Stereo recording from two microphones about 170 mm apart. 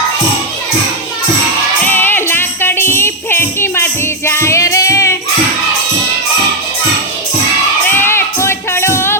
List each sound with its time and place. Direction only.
1.9 s music: 10° left (ahead or behind)
7.9 s music: 15° left (ahead or behind)